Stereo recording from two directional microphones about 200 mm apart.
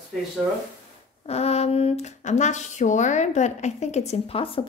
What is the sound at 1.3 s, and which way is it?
Speech, 30° left (ahead or behind).